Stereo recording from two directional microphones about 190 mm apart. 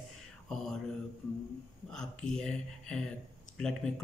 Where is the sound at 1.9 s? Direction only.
5° left (ahead or behind).